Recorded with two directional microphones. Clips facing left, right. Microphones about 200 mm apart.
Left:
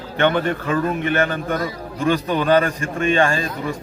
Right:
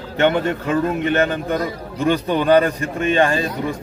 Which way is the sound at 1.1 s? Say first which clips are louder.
Right 2 dB; 20° right (ahead or behind).